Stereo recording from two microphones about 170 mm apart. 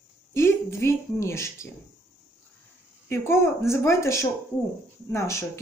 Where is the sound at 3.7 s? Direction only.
15° left (ahead or behind).